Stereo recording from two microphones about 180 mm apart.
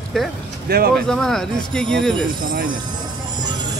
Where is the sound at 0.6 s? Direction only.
60° right (ahead or behind).